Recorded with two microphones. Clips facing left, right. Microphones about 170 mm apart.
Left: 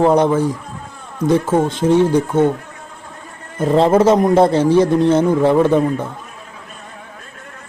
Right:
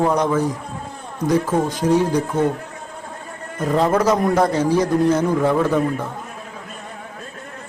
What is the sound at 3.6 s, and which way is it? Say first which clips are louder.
A man's voice: left 5 dB; 30° left (ahead or behind).